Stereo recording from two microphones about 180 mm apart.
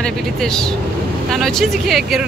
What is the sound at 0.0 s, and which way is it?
Speech, 5° left (ahead or behind).